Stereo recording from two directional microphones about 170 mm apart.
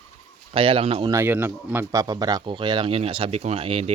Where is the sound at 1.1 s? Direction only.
15° right (ahead or behind).